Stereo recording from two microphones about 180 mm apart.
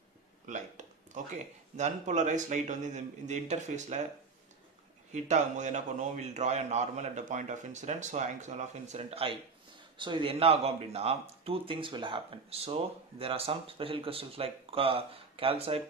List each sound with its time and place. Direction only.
0.5 s a sound: 45° right (ahead or behind)
1.8 s a man's voice: 40° right (ahead or behind)
5.1 s a man's voice: 40° right (ahead or behind)